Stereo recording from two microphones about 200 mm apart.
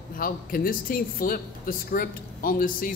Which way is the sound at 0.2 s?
45° left (ahead or behind).